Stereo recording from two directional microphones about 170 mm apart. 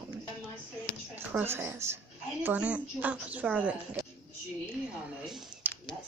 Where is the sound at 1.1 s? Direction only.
10° right (ahead or behind).